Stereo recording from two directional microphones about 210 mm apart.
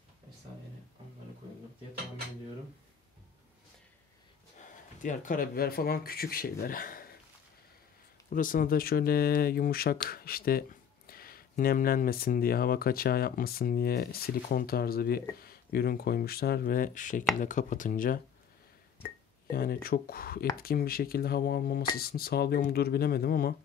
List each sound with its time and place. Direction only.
4.6 s speech: 35° left (ahead or behind)
8.3 s speech: 40° left (ahead or behind)
19.4 s speech: 45° left (ahead or behind)